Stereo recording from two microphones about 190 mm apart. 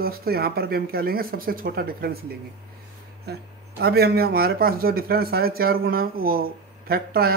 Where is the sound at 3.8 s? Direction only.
55° right (ahead or behind).